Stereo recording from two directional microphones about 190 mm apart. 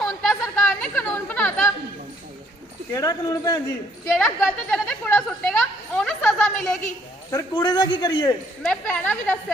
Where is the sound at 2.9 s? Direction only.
20° left (ahead or behind).